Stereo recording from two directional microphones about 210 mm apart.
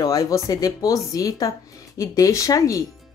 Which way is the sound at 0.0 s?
15° left (ahead or behind).